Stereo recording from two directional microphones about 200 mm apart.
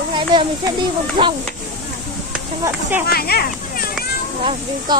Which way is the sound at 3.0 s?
50° left (ahead or behind).